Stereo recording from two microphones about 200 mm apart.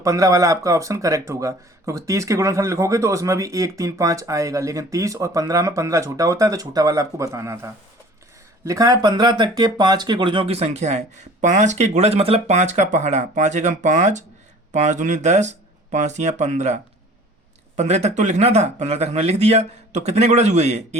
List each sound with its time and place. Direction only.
0.0 s speech: 15° right (ahead or behind); by 20.8 s 35° right (ahead or behind)